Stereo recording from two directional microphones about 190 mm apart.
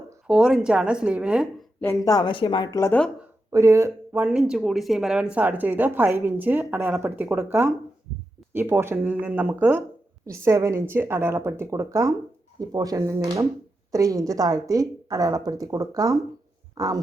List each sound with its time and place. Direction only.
0.3 s a woman's voice: 5° right (ahead or behind)
1.8 s a woman's voice: 15° left (ahead or behind)
3.5 s a woman's voice: 15° right (ahead or behind)
16.7 s heart sounds: 20° right (ahead or behind)